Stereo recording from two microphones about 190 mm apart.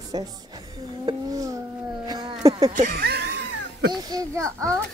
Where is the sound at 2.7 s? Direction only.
45° right (ahead or behind); by 3.9 s 65° right (ahead or behind).